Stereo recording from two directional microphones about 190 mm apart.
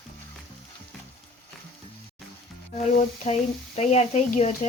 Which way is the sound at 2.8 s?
40° left (ahead or behind).